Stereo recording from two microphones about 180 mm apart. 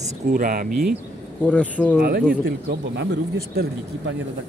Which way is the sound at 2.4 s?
65° right (ahead or behind).